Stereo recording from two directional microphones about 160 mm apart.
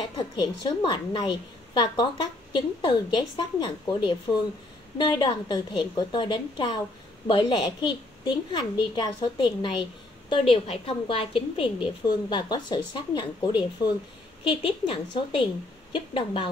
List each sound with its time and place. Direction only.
0.4 s a woman's voice: 30° left (ahead or behind)